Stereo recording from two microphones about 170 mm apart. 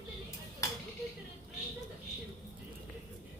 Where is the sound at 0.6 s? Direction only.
20° left (ahead or behind).